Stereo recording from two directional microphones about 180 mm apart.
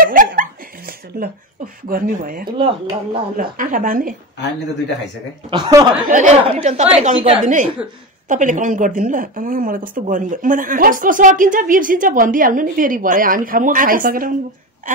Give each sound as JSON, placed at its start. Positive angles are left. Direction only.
{"t": 0.0, "sound": "a sound", "side_deg": -50}
{"t": 1.9, "sound": "speech", "side_deg": -50}
{"t": 2.5, "sound": "speech", "side_deg": -30}
{"t": 3.3, "sound": "speech", "side_deg": -50}
{"t": 5.5, "sound": "speech", "side_deg": -25}
{"t": 6.0, "sound": "a woman's voice", "side_deg": -40}